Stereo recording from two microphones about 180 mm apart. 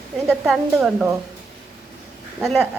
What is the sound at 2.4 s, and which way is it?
Speech, centre (ahead or behind).